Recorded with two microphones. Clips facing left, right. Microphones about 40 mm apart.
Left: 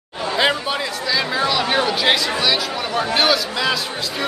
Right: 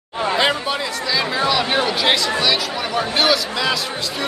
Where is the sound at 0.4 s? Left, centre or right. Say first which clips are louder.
Left 3 dB; centre.